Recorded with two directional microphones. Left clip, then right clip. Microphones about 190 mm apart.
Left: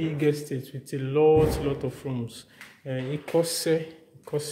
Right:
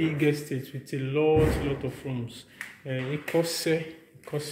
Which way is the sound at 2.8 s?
15° left (ahead or behind).